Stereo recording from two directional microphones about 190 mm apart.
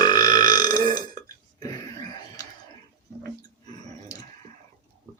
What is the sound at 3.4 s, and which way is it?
Dog, 20° left (ahead or behind).